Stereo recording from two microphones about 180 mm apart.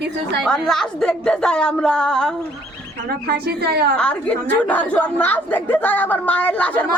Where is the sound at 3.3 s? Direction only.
60° right (ahead or behind).